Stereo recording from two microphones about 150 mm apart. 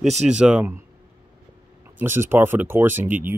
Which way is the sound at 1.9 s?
15° right (ahead or behind).